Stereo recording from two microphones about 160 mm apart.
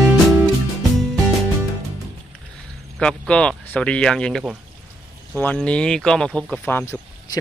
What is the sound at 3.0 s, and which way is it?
Speech, 5° left (ahead or behind).